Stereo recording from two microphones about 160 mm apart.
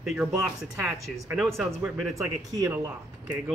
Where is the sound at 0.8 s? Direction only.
20° right (ahead or behind).